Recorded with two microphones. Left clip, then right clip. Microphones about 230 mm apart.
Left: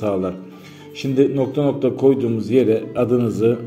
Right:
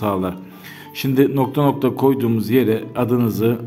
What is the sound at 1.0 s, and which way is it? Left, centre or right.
Speech, right.